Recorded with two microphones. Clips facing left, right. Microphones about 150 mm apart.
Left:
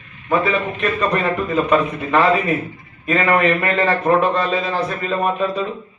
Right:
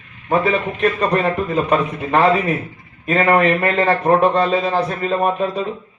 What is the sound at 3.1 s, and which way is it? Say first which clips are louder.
A man's voice: right 2 dB; 35° right (ahead or behind).